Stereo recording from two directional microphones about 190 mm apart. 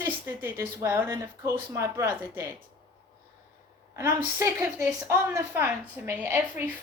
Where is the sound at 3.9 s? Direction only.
15° right (ahead or behind).